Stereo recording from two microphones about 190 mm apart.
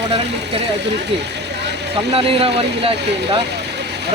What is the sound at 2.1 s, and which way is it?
Speech, 30° right (ahead or behind).